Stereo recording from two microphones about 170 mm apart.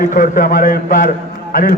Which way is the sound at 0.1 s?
55° left (ahead or behind).